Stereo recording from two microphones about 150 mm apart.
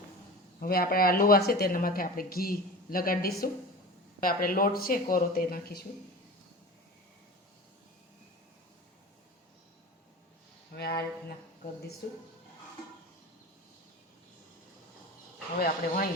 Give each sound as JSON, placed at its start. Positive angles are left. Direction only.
{"t": 0.6, "sound": "speech", "side_deg": 85}
{"t": 10.8, "sound": "speech", "side_deg": 90}
{"t": 15.5, "sound": "speech", "side_deg": 75}